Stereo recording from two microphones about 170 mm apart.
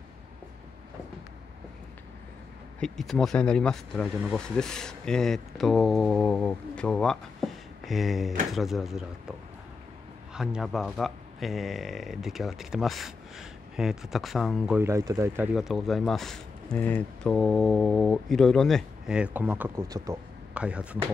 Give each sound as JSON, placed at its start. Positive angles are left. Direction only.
{"t": 2.8, "sound": "speech", "side_deg": 0}
{"t": 10.3, "sound": "speech", "side_deg": -5}
{"t": 14.8, "sound": "a man's voice", "side_deg": -15}
{"t": 20.5, "sound": "speech", "side_deg": -5}